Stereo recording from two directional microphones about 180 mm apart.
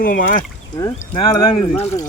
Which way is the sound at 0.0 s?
50° left (ahead or behind).